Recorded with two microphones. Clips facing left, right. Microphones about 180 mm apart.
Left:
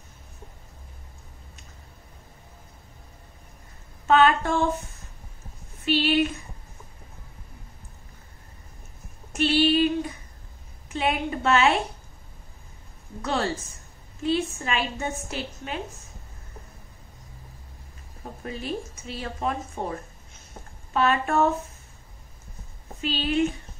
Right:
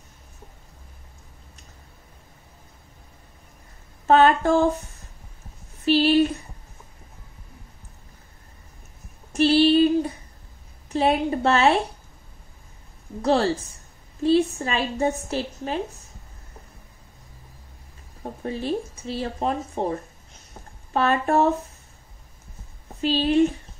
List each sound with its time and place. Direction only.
4.1 s a woman's voice: 35° right (ahead or behind)
5.9 s a woman's voice: 35° right (ahead or behind)
9.3 s female singing: 35° right (ahead or behind)
10.9 s a woman's voice: 35° right (ahead or behind)
13.2 s a woman's voice: 30° right (ahead or behind)
18.2 s a woman's voice: 30° right (ahead or behind)
20.9 s a woman's voice: 35° right (ahead or behind)
22.9 s a woman's voice: 35° right (ahead or behind)